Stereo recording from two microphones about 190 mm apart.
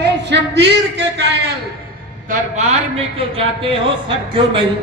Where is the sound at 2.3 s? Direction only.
35° right (ahead or behind).